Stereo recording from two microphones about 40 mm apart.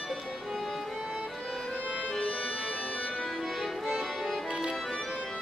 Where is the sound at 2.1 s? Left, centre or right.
Centre.